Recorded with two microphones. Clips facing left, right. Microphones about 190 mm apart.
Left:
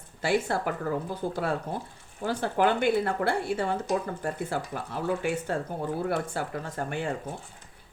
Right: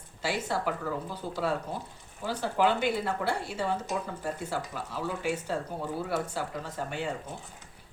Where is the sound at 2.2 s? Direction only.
55° left (ahead or behind).